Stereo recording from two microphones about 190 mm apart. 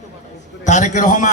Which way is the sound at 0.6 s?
40° left (ahead or behind).